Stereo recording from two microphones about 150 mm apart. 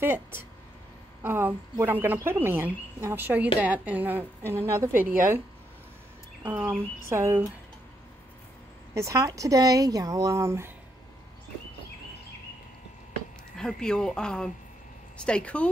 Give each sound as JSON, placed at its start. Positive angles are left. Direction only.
{"t": 0.0, "sound": "a woman's voice", "side_deg": -15}
{"t": 6.4, "sound": "a woman's voice", "side_deg": -15}
{"t": 8.9, "sound": "speech", "side_deg": -20}
{"t": 13.6, "sound": "speech", "side_deg": 5}